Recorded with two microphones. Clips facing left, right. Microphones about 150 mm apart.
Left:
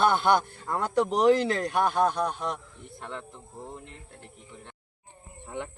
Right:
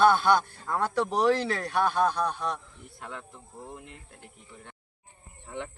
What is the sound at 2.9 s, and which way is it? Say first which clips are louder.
Speech: left 2 dB; 5° right (ahead or behind).